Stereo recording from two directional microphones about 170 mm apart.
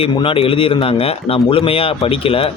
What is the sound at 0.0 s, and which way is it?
Speech, 30° left (ahead or behind).